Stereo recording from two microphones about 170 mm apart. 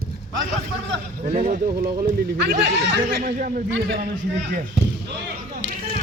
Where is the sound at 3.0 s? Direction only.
60° right (ahead or behind).